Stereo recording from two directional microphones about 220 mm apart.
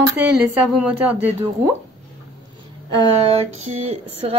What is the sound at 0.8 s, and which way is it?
Speech, 5° right (ahead or behind).